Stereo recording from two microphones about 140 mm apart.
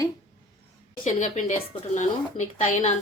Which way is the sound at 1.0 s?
55° left (ahead or behind).